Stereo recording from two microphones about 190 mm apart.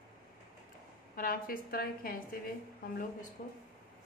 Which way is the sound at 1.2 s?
50° left (ahead or behind).